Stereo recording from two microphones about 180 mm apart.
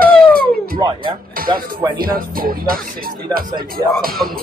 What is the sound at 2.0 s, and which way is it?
Music, 55° right (ahead or behind).